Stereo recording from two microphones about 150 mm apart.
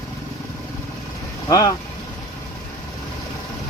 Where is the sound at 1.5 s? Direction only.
25° left (ahead or behind).